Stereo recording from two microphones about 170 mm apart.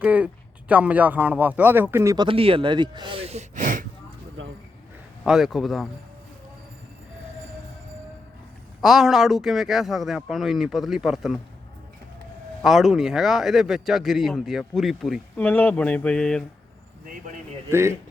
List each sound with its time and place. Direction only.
0.0 s speech: 10° right (ahead or behind)
2.2 s speech: 30° right (ahead or behind); by 3.8 s 50° right (ahead or behind)
4.4 s a sound: 90° right
5.2 s speech: centre (ahead or behind)
8.8 s speech: centre (ahead or behind)
12.6 s speech: centre (ahead or behind)
15.4 s speech: 10° left (ahead or behind)
17.7 s speech: 15° right (ahead or behind)